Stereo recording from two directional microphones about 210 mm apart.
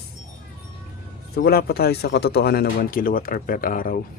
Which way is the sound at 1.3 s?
45° left (ahead or behind).